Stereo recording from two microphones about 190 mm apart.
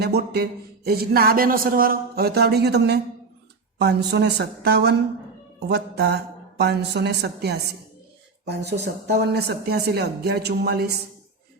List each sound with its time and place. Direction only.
0.0 s a man's voice: 55° right (ahead or behind)